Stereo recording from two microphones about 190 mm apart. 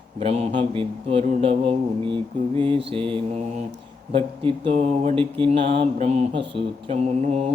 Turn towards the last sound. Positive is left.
turn(degrees=-35)  # may be behind; listen again after turning